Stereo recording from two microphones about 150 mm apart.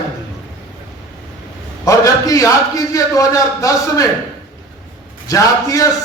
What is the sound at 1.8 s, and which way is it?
Speech, 20° left (ahead or behind).